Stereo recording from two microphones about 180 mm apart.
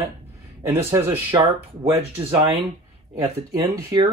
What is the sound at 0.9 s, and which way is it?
Speech, 15° right (ahead or behind).